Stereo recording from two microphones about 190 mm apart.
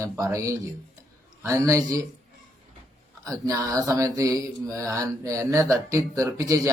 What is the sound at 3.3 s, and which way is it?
Mantra, 15° right (ahead or behind).